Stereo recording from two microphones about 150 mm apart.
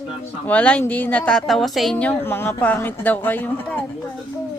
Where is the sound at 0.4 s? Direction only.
10° left (ahead or behind).